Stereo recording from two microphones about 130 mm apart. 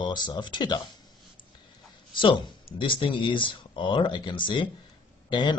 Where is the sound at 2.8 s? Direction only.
40° left (ahead or behind).